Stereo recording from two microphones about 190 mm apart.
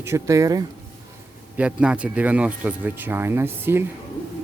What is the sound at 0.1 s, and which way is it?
Speech, 15° right (ahead or behind).